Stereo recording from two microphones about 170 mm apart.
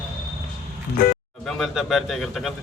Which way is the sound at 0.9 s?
55° left (ahead or behind).